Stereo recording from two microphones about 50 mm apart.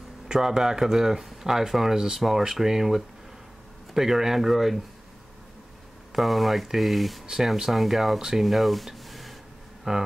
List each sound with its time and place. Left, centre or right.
0.3 s speech: centre
6.1 s speech: centre
7.2 s speech: centre
8.2 s speech: centre
8.5 s a sound: centre
9.9 s speech: centre